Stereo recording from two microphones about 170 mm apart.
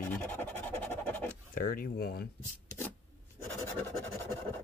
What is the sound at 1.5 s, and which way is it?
Speech, 60° left (ahead or behind).